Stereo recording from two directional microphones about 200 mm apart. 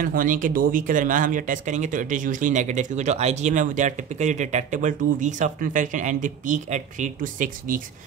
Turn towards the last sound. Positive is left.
turn(degrees=-40)  # may be behind; listen again after turning